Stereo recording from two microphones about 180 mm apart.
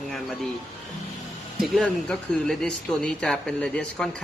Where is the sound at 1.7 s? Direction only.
5° left (ahead or behind).